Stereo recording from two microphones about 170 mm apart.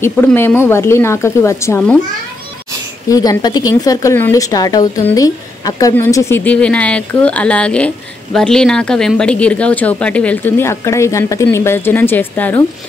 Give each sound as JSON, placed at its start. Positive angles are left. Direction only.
{"t": 0.0, "sound": "a woman's voice", "side_deg": 10}
{"t": 3.1, "sound": "a woman's voice", "side_deg": 20}